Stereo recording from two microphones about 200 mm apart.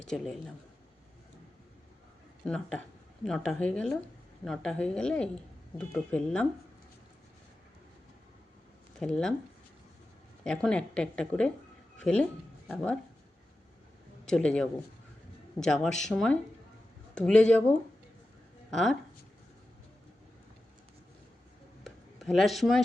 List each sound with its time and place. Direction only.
0.0 s speech: 5° left (ahead or behind)
2.4 s speech: 5° left (ahead or behind)
9.0 s speech: 5° left (ahead or behind)
10.4 s speech: 5° left (ahead or behind)
14.3 s speech: 5° left (ahead or behind)
21.8 s a sound: centre (ahead or behind)